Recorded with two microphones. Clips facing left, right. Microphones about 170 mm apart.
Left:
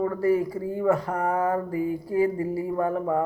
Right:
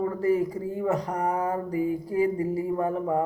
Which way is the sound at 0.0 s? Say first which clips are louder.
Left 1 dB; 20° right (ahead or behind).